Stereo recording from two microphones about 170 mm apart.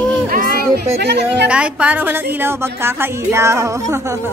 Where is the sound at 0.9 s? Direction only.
75° right (ahead or behind).